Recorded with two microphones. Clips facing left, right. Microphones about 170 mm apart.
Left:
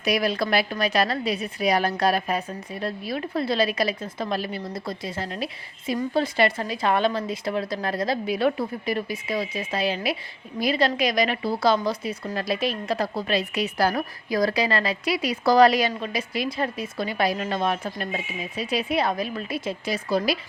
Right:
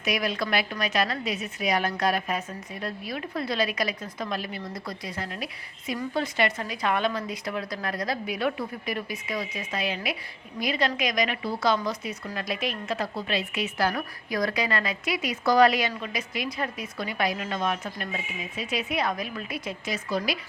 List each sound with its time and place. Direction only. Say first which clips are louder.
0.0 s a woman's voice: left 4 dB; 35° left (ahead or behind)